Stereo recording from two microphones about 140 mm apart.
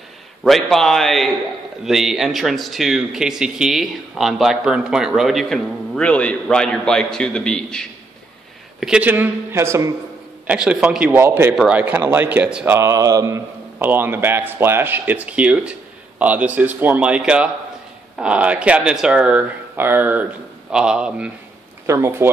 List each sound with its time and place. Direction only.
0.4 s a man's voice: centre (ahead or behind); by 9.9 s 20° right (ahead or behind)
10.4 s a man's voice: 10° right (ahead or behind)
11.1 s a man's voice: 15° right (ahead or behind)
12.7 s a man's voice: 20° right (ahead or behind); by 21.3 s 5° right (ahead or behind)
21.8 s speech: 20° right (ahead or behind)